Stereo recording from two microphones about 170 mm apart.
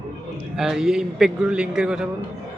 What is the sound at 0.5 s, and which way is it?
A man's voice, centre (ahead or behind).